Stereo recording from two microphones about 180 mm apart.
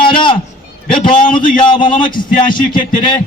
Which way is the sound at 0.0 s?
25° left (ahead or behind).